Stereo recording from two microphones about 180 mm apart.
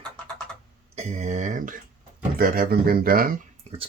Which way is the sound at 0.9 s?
40° right (ahead or behind).